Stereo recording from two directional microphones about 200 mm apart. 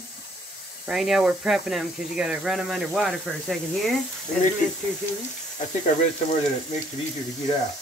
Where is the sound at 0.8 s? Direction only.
Centre (ahead or behind).